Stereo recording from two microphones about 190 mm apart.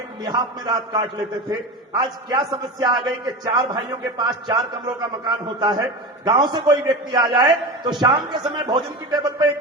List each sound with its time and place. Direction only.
0.3 s a man's voice: 25° right (ahead or behind)